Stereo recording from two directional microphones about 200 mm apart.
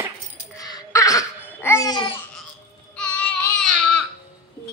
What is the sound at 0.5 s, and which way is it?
Babbling, 15° left (ahead or behind).